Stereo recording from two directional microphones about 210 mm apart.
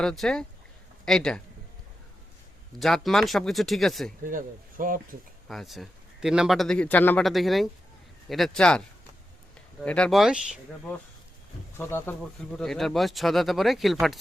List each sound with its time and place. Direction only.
0.0 s speech: 5° left (ahead or behind)
2.7 s speech: centre (ahead or behind)
4.2 s speech: 40° right (ahead or behind)
5.5 s speech: centre (ahead or behind)
9.8 s speech: 5° left (ahead or behind)
11.8 s speech: 10° left (ahead or behind)